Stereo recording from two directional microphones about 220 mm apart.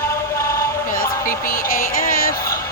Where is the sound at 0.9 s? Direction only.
40° left (ahead or behind).